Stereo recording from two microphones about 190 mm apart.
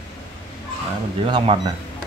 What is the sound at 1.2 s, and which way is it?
Speech, 30° right (ahead or behind).